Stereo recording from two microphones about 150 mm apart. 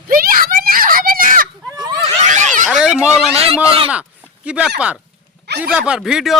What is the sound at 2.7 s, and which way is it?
Speech, 5° right (ahead or behind).